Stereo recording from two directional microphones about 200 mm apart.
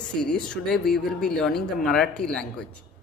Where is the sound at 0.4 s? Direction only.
5° left (ahead or behind).